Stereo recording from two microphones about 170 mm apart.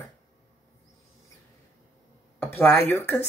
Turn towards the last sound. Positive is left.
turn(degrees=15)  # may be behind; listen again after turning